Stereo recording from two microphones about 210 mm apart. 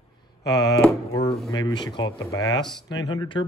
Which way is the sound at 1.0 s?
20° left (ahead or behind).